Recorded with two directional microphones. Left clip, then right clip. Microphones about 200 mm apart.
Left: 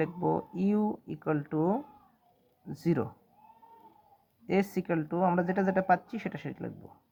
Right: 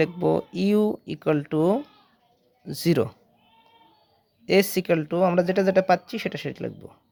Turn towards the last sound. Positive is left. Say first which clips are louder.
# right 9 dB
turn(degrees=-50)  # may be behind; listen again after turning